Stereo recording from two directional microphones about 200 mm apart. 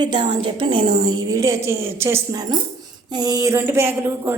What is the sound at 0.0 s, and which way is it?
A woman's voice, 25° right (ahead or behind).